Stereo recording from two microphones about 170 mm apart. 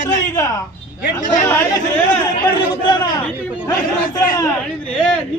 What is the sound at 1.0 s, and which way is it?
Speech, 50° left (ahead or behind).